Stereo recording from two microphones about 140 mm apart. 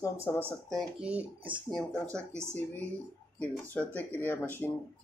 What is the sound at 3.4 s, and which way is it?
Speech, 10° left (ahead or behind).